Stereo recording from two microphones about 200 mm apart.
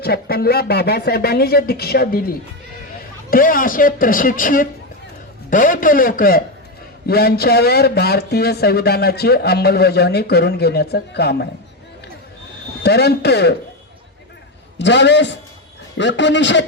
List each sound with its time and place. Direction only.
0.0 s speech: 50° left (ahead or behind)
12.8 s speech: 55° left (ahead or behind)
14.8 s speech: 60° left (ahead or behind)